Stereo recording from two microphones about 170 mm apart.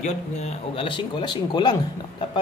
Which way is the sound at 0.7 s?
30° left (ahead or behind).